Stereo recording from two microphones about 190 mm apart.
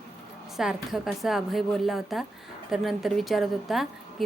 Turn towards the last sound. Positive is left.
turn(degrees=0)  # may be behind; listen again after turning